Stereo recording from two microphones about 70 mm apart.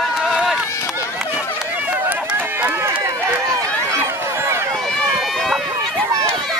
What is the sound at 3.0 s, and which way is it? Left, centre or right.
Run, right.